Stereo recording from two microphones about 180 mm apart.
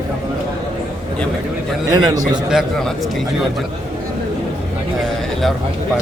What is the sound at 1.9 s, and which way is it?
Speech, 20° right (ahead or behind).